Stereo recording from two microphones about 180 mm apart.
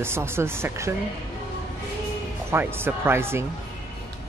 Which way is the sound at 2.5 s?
15° right (ahead or behind).